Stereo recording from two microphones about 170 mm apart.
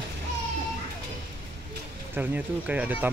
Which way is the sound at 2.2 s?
10° right (ahead or behind).